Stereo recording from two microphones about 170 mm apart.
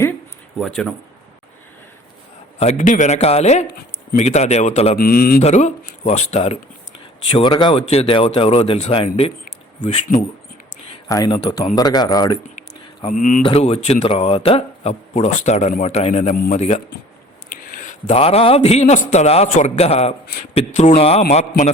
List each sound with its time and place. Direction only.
0.6 s speech: 5° left (ahead or behind)
2.6 s speech: 45° left (ahead or behind)
4.9 s speech: 60° left (ahead or behind)
5.4 s speech: 40° left (ahead or behind)
11.1 s speech: 20° left (ahead or behind)
13.0 s speech: 45° left (ahead or behind)
13.4 s a man's voice: 35° left (ahead or behind)